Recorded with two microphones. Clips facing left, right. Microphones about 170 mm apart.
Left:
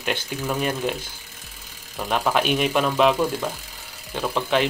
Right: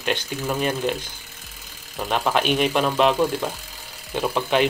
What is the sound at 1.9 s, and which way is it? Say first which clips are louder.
Speech: even; centre (ahead or behind).